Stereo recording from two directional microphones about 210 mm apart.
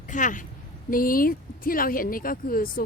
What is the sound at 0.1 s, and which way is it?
A woman's voice, 35° left (ahead or behind).